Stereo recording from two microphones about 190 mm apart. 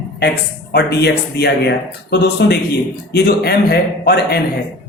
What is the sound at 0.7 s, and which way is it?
A man's voice, 60° left (ahead or behind).